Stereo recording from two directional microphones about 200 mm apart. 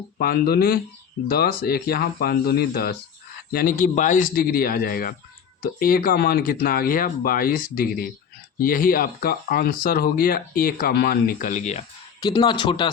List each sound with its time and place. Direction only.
0.2 s speech: 50° left (ahead or behind)
12.2 s speech: 20° left (ahead or behind)